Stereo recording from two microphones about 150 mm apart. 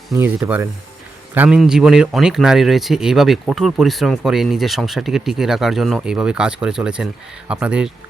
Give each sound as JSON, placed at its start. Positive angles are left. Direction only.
{"t": 0.2, "sound": "speech", "side_deg": -15}